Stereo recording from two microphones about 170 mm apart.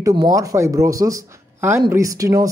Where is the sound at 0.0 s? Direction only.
20° right (ahead or behind).